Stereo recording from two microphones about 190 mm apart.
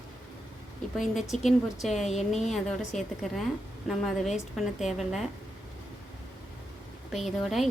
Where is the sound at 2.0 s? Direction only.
35° left (ahead or behind).